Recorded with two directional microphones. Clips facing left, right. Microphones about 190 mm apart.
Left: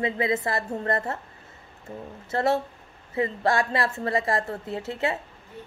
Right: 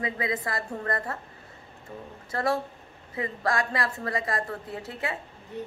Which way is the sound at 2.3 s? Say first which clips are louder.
Left 3 dB; 25° left (ahead or behind).